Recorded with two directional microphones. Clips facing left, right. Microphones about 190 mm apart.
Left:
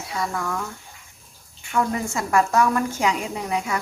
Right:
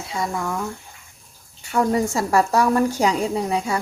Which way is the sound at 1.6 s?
35° right (ahead or behind).